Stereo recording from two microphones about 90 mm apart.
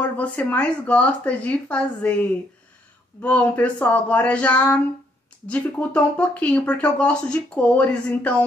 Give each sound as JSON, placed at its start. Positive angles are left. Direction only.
{"t": 0.0, "sound": "speech", "side_deg": 15}